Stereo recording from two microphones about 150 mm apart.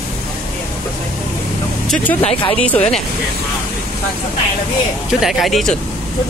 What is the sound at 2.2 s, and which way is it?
Speech, 40° left (ahead or behind).